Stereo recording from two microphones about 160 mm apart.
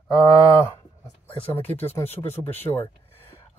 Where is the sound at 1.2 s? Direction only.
10° left (ahead or behind).